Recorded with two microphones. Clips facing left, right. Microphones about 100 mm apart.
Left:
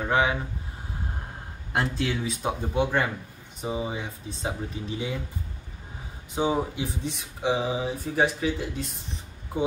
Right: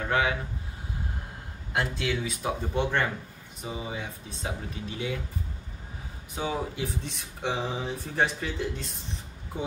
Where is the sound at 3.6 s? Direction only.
30° left (ahead or behind).